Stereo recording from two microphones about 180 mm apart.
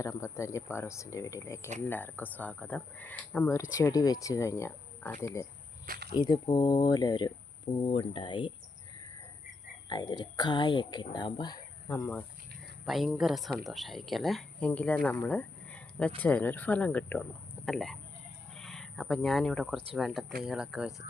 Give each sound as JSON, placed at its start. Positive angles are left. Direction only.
{"t": 0.0, "sound": "speech", "side_deg": 15}
{"t": 5.8, "sound": "a sound", "side_deg": -55}
{"t": 6.1, "sound": "speech", "side_deg": 25}
{"t": 9.9, "sound": "speech", "side_deg": 25}
{"t": 12.8, "sound": "speech", "side_deg": 0}